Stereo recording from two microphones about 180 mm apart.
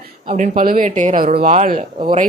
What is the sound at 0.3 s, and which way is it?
A woman's voice, 40° right (ahead or behind).